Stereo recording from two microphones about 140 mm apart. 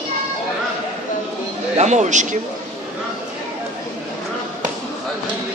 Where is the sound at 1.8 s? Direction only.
55° right (ahead or behind).